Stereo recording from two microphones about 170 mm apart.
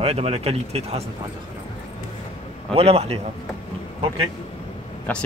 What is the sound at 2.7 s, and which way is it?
Speech, 35° right (ahead or behind).